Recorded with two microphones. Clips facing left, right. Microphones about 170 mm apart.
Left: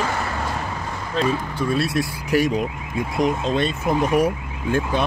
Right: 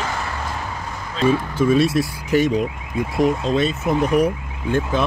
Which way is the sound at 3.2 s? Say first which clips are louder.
Right 3 dB; centre (ahead or behind).